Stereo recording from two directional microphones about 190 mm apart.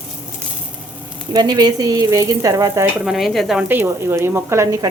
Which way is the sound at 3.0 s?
Centre (ahead or behind).